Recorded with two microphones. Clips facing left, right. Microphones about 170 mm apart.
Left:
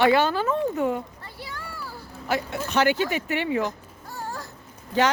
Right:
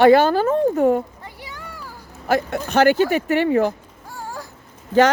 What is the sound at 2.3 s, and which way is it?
Speech, 50° right (ahead or behind).